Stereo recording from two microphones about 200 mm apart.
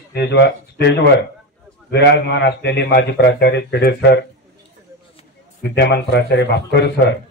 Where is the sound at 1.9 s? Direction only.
55° left (ahead or behind).